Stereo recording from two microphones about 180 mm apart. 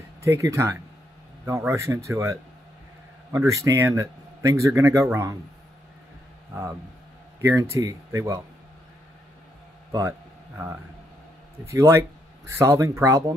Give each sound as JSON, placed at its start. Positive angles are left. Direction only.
{"t": 0.2, "sound": "a man's voice", "side_deg": -15}
{"t": 7.4, "sound": "a man's voice", "side_deg": -15}
{"t": 11.6, "sound": "a man's voice", "side_deg": -15}